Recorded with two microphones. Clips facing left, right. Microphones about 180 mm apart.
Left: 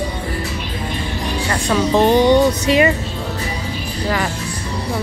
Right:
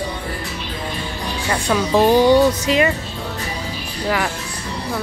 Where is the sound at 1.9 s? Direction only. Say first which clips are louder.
Even; 20° left (ahead or behind).